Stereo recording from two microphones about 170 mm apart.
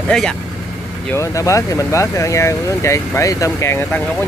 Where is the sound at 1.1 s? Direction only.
15° left (ahead or behind).